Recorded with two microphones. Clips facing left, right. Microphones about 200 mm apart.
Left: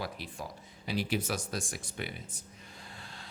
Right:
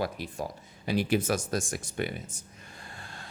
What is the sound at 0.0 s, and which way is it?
Speech, 45° right (ahead or behind).